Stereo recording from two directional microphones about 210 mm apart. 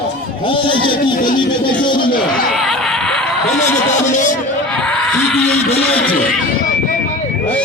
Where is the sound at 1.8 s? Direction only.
20° left (ahead or behind).